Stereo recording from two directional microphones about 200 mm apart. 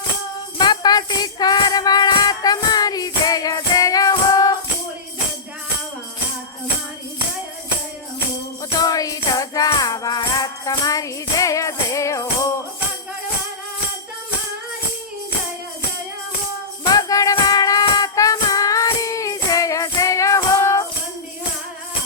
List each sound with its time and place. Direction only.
0.6 s music: 20° left (ahead or behind)
8.8 s music: 20° left (ahead or behind)
16.9 s music: 15° left (ahead or behind)